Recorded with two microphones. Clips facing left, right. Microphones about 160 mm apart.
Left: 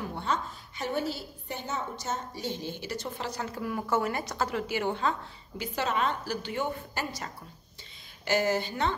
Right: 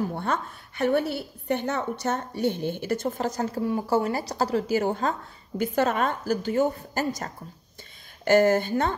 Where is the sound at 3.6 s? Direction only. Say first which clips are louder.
Right 5 dB; 25° right (ahead or behind).